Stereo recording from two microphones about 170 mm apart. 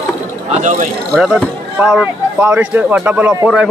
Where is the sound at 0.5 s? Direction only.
45° right (ahead or behind).